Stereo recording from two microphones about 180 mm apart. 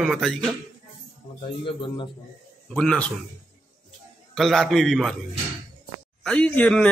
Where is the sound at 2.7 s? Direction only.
5° left (ahead or behind).